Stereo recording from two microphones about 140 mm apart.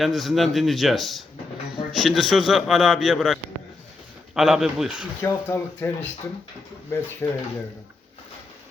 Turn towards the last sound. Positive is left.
turn(degrees=15)  # may be behind; listen again after turning